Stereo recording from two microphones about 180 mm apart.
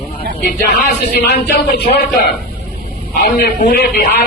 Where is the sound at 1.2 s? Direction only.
65° left (ahead or behind).